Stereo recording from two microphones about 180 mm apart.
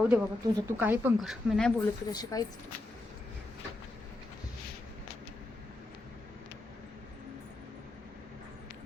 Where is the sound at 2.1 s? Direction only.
20° left (ahead or behind).